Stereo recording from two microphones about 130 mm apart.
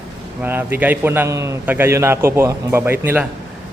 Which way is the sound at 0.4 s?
15° right (ahead or behind).